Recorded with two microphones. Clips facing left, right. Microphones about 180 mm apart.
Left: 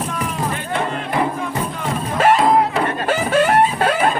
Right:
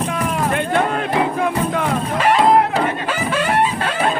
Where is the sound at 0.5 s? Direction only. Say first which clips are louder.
Right 5 dB; 65° right (ahead or behind).